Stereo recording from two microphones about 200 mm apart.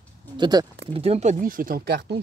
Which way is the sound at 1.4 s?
45° right (ahead or behind).